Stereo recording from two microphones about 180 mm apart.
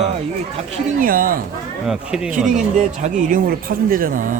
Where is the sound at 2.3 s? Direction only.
45° right (ahead or behind).